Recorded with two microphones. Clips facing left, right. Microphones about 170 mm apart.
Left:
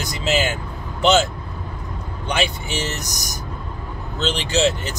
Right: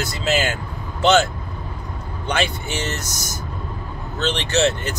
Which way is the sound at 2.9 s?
15° left (ahead or behind).